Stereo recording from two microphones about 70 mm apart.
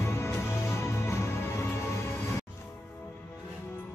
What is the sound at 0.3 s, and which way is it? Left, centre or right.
Music, left.